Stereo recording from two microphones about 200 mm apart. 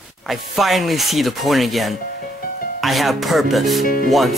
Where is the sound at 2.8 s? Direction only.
Centre (ahead or behind).